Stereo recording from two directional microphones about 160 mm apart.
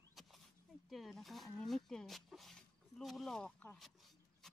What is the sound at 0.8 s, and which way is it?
Speech, centre (ahead or behind).